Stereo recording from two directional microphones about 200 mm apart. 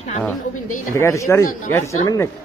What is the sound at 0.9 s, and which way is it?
Speech, 15° left (ahead or behind).